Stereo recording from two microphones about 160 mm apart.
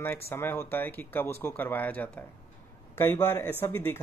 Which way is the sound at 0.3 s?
15° left (ahead or behind).